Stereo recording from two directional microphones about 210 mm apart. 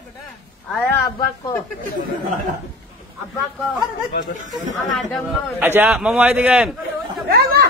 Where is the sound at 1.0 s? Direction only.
15° left (ahead or behind).